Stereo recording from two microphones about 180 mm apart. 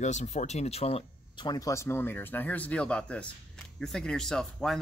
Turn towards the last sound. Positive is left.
turn(degrees=5)  # may be behind; listen again after turning